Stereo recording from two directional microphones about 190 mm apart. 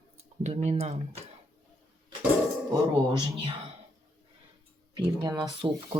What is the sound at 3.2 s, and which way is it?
Speech, 25° right (ahead or behind).